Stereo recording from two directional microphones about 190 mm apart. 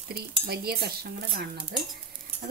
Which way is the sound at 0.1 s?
55° right (ahead or behind).